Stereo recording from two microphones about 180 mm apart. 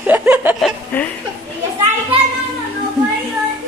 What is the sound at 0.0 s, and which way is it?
Chuckle, 10° right (ahead or behind).